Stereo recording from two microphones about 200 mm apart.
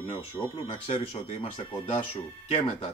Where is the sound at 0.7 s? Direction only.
25° left (ahead or behind).